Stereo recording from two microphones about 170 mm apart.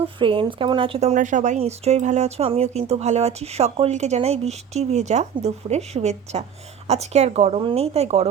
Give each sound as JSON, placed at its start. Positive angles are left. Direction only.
{"t": 0.2, "sound": "speech", "side_deg": -30}